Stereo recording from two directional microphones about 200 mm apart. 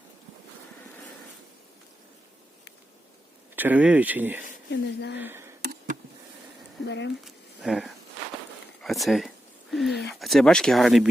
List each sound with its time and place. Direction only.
3.5 s speech: 10° right (ahead or behind)
4.7 s speech: 60° left (ahead or behind)
5.2 s speech: 10° right (ahead or behind)
6.8 s speech: 60° left (ahead or behind)
7.3 s a sound: centre (ahead or behind)
10.2 s speech: centre (ahead or behind)